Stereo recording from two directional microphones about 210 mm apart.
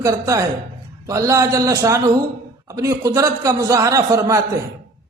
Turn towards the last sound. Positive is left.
turn(degrees=-15)  # may be behind; listen again after turning